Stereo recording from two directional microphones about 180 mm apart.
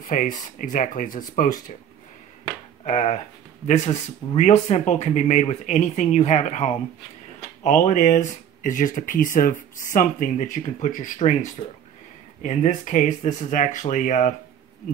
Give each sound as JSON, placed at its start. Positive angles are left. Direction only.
{"t": 0.0, "sound": "speech", "side_deg": 45}
{"t": 2.8, "sound": "speech", "side_deg": 40}